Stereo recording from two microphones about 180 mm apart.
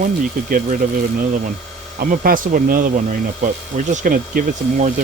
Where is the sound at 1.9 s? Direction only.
50° right (ahead or behind).